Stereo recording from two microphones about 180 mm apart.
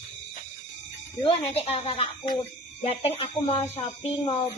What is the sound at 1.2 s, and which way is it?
Speech, 25° left (ahead or behind).